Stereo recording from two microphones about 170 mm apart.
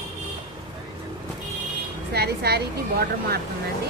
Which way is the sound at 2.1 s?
70° right (ahead or behind).